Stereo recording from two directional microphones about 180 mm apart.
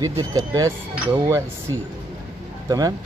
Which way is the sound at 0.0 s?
20° right (ahead or behind).